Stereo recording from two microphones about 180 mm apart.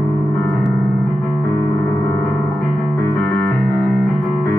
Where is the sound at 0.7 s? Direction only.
10° left (ahead or behind).